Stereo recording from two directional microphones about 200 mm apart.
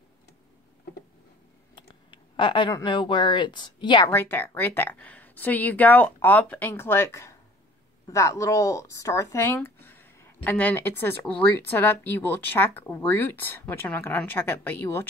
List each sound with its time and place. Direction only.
1.8 s speech: 25° left (ahead or behind)
4.1 s speech: 10° left (ahead or behind)